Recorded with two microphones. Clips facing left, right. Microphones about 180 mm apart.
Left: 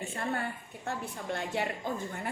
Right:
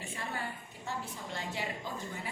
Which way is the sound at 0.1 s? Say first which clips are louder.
Left 4 dB; 55° left (ahead or behind).